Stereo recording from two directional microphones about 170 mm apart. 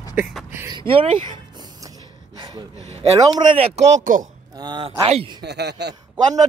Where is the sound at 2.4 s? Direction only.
25° right (ahead or behind).